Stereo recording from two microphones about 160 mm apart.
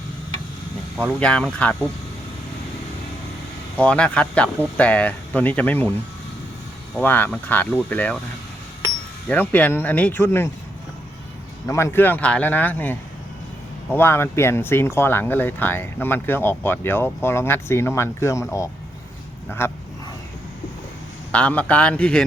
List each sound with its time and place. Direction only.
0.9 s speech: 5° left (ahead or behind)
3.8 s speech: 5° left (ahead or behind)
7.0 s speech: 10° left (ahead or behind)
9.3 s speech: 10° left (ahead or behind)
11.7 s speech: 15° left (ahead or behind)
19.6 s speech: 15° left (ahead or behind)
21.3 s speech: 10° left (ahead or behind)